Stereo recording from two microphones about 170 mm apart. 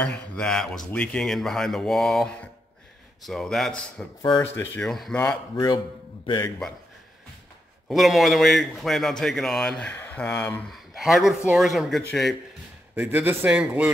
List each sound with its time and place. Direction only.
0.0 s speech: 5° left (ahead or behind)
4.2 s speech: 25° left (ahead or behind)
4.6 s speech: 5° left (ahead or behind)
6.2 s speech: 20° left (ahead or behind)
7.9 s speech: centre (ahead or behind)
12.9 s a man's voice: 10° right (ahead or behind)